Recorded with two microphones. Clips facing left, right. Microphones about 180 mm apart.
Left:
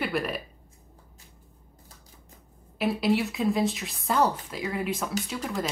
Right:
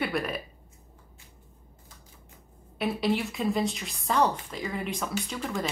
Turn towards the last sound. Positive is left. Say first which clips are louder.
# left 1 dB
turn(degrees=5)  # may be behind; listen again after turning